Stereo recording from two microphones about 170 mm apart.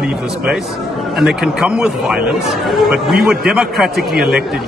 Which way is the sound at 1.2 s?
5° right (ahead or behind).